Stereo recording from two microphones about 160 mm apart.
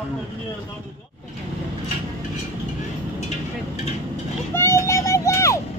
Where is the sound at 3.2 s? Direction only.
45° left (ahead or behind).